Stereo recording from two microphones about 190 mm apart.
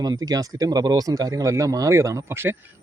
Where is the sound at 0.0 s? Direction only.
20° right (ahead or behind).